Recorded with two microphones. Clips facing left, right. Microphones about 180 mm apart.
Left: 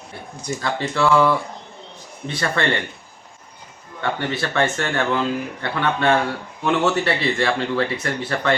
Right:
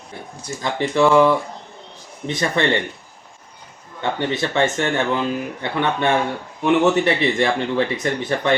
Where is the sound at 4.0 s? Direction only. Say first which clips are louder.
Right 2 dB; 20° right (ahead or behind).